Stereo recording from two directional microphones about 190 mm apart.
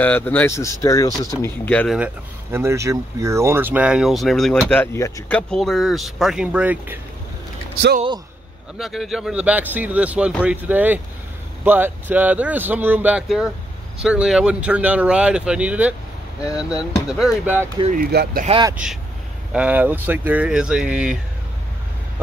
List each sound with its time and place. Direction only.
0.0 s speech: 10° left (ahead or behind)
1.4 s speech: 5° left (ahead or behind)
2.0 s speech: 10° right (ahead or behind)
4.9 s speech: 15° left (ahead or behind)
5.5 s speech: centre (ahead or behind)
8.7 s speech: centre (ahead or behind)
17.9 s speech: 55° right (ahead or behind)
19.5 s speech: 5° right (ahead or behind)